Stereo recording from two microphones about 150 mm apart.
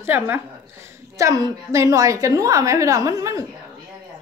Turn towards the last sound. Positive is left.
turn(degrees=-20)  # may be behind; listen again after turning